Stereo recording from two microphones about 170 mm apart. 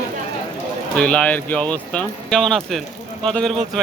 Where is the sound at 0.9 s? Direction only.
5° left (ahead or behind).